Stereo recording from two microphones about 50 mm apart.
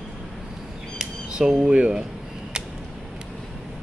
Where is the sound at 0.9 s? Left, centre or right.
Centre.